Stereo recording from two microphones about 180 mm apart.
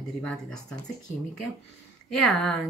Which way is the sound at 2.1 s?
Centre (ahead or behind).